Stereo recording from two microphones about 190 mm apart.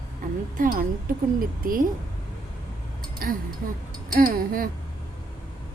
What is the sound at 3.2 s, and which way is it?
A woman's voice, 50° right (ahead or behind).